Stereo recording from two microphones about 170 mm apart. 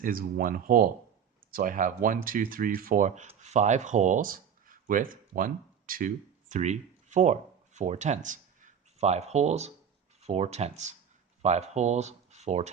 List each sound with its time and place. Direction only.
0.0 s speech: 55° right (ahead or behind); by 12.7 s 40° right (ahead or behind)